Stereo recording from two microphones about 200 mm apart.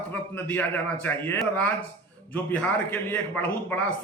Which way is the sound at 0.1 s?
10° left (ahead or behind).